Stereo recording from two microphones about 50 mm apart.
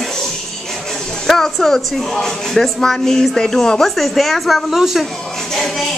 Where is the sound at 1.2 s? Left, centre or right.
Centre.